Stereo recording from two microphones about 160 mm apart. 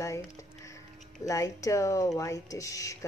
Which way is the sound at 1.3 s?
20° left (ahead or behind).